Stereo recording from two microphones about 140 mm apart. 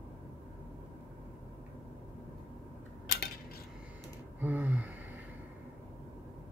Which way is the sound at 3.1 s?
80° left.